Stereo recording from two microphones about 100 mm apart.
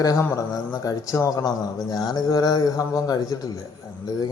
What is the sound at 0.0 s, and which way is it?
Speech, 35° left (ahead or behind).